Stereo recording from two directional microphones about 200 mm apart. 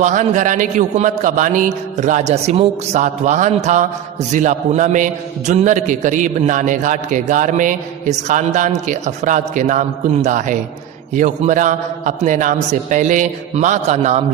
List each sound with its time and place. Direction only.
0.0 s a man's voice: 35° right (ahead or behind)